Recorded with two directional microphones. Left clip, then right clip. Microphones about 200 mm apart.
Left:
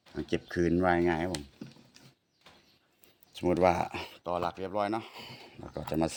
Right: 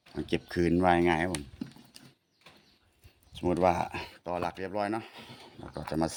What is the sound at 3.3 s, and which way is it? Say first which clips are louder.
Speech: left 1 dB; 15° left (ahead or behind).